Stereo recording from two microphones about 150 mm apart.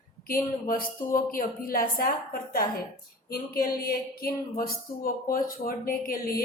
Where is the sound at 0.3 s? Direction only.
75° left (ahead or behind).